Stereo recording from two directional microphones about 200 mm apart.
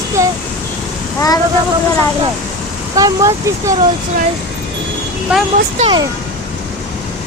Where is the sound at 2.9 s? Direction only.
15° right (ahead or behind).